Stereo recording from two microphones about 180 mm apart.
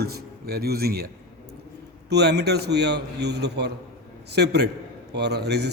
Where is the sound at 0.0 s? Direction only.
60° right (ahead or behind).